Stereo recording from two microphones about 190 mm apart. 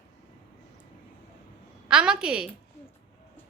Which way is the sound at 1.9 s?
5° right (ahead or behind).